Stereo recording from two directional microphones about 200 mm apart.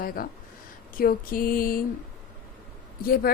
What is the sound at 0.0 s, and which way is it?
A woman's voice, 45° left (ahead or behind).